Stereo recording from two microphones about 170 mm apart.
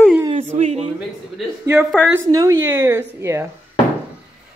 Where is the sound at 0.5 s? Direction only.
40° right (ahead or behind).